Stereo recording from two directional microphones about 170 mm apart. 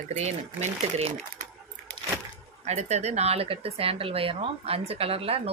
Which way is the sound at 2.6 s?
40° right (ahead or behind).